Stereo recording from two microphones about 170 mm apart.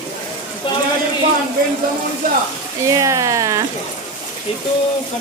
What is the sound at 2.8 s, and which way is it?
Speech, 20° right (ahead or behind).